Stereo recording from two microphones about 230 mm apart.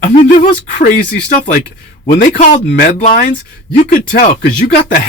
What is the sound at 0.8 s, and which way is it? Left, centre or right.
Speech, left.